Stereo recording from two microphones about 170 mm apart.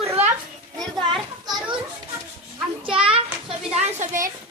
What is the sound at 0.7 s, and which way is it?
Children playing, centre (ahead or behind).